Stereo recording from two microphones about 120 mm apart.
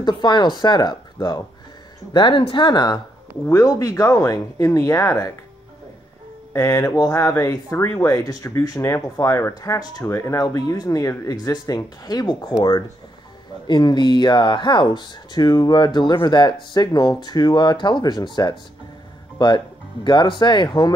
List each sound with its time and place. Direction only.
0.0 s speech: 35° left (ahead or behind)
6.5 s speech: 25° left (ahead or behind); by 12.5 s 40° left (ahead or behind)
13.7 s speech: 40° left (ahead or behind)